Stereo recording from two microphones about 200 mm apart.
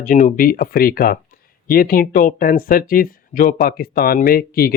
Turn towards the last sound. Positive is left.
turn(degrees=50)  # may be behind; listen again after turning